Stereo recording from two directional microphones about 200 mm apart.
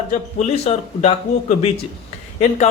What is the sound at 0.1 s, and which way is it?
Speech, 35° left (ahead or behind).